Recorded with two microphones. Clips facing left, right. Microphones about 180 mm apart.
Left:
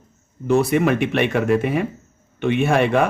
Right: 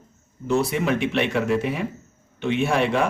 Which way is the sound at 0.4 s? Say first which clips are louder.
Left 5 dB; 55° left (ahead or behind).